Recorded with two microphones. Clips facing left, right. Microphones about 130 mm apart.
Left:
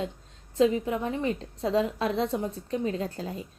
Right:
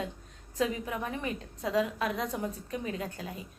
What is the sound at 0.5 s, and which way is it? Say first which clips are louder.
A woman's voice: left 8 dB; 30° left (ahead or behind).